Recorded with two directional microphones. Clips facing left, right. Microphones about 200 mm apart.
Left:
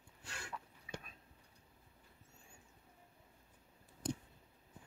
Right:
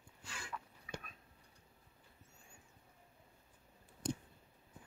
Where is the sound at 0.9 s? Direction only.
25° left (ahead or behind).